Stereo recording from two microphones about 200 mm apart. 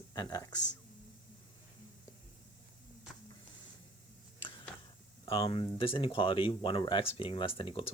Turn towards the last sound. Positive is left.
turn(degrees=25)  # may be behind; listen again after turning